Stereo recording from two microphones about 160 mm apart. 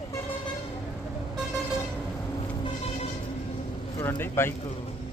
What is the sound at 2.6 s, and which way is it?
Vehicle, 40° left (ahead or behind).